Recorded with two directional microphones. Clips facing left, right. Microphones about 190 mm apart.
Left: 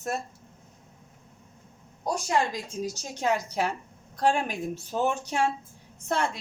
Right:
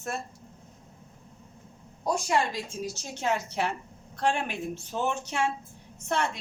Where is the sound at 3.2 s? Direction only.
40° left (ahead or behind).